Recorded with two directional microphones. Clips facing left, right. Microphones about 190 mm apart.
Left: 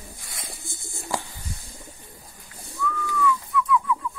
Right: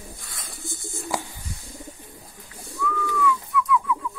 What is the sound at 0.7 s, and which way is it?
Bird, 15° right (ahead or behind).